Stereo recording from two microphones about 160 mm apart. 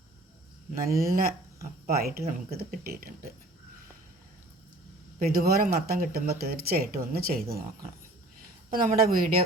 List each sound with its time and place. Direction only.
0.7 s speech: 65° right (ahead or behind)
5.2 s speech: 70° right (ahead or behind)
8.7 s speech: 60° right (ahead or behind)